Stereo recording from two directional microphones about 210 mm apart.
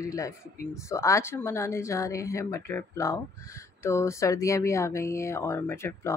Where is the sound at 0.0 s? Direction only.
15° left (ahead or behind).